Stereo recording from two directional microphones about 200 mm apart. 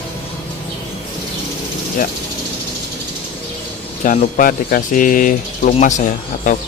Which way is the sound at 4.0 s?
40° left (ahead or behind).